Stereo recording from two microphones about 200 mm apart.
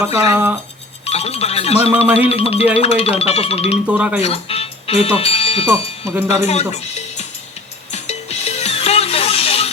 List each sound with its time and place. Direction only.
0.0 s speech: 15° right (ahead or behind)
1.0 s speech: 30° left (ahead or behind)
1.9 s speech: 10° right (ahead or behind)
2.3 s speech: 30° left (ahead or behind)
3.8 s speech: 5° right (ahead or behind)
4.2 s speech: 30° left (ahead or behind)
5.6 s speech: 15° right (ahead or behind)
6.2 s speech: 35° left (ahead or behind)
7.9 s music: 35° left (ahead or behind)